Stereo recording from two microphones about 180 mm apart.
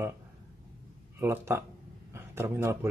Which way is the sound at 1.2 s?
15° right (ahead or behind).